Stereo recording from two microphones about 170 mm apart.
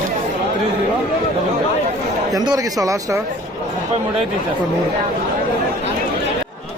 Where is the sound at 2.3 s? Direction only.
20° right (ahead or behind).